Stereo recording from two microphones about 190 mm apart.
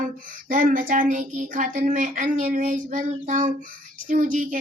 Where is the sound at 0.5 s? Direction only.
45° right (ahead or behind).